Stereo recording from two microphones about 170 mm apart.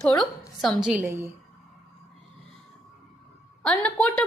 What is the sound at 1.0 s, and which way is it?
Speech, 15° right (ahead or behind).